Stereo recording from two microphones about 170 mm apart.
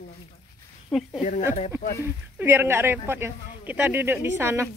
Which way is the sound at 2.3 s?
10° right (ahead or behind).